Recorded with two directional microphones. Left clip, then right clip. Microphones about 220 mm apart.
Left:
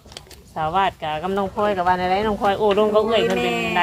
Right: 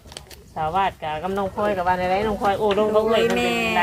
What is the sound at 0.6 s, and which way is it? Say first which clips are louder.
Speech: left 2 dB; 55° left (ahead or behind).